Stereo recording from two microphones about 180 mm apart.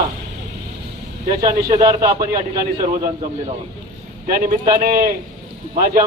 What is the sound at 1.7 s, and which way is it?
Speech, 20° right (ahead or behind).